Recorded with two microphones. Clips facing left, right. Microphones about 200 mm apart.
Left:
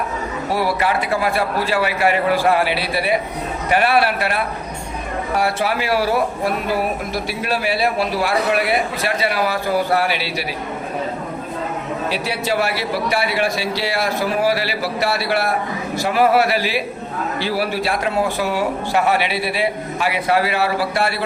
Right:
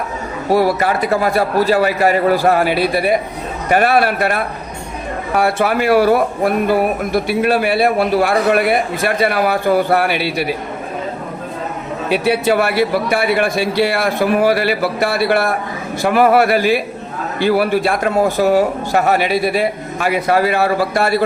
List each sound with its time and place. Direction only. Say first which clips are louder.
0.5 s a man's voice: right 6 dB; 45° right (ahead or behind)
12.0 s a man's voice: right 10 dB; 55° right (ahead or behind)